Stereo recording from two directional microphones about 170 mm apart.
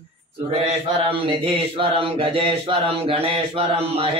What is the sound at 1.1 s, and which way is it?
Speech, 30° right (ahead or behind).